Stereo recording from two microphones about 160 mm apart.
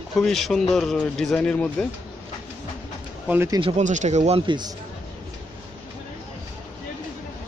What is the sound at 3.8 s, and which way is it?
Speech, 50° right (ahead or behind).